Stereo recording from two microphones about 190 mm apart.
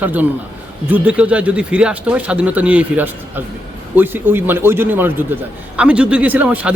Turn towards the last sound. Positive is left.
turn(degrees=-10)  # may be behind; listen again after turning